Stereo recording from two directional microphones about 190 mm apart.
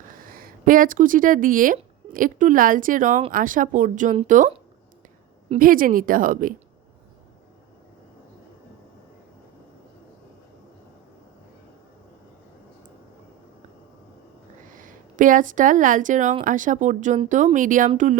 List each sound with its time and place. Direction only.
0.1 s speech: 50° right (ahead or behind)
14.7 s speech: 45° right (ahead or behind)